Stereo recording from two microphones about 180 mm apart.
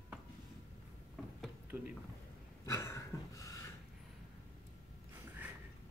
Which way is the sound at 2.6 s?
15° left (ahead or behind).